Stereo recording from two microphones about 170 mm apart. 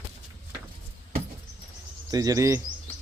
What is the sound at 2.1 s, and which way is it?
Speech, 20° right (ahead or behind).